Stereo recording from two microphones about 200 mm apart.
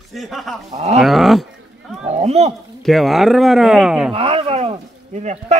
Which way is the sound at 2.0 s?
30° right (ahead or behind).